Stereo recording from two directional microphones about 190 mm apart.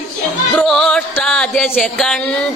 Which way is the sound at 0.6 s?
Centre (ahead or behind).